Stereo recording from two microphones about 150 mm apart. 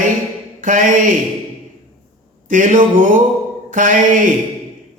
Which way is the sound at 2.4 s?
60° right (ahead or behind).